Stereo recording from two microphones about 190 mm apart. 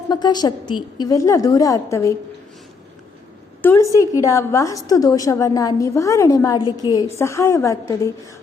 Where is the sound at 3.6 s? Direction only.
15° left (ahead or behind).